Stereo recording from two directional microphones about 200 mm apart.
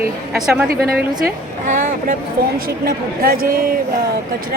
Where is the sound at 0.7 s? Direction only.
50° right (ahead or behind).